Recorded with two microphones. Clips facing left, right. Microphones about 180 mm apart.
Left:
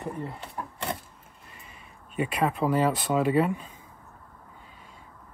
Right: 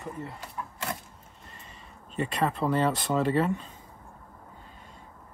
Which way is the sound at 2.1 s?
10° left (ahead or behind).